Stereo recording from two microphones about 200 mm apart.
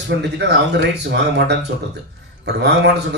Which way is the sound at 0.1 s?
60° right (ahead or behind).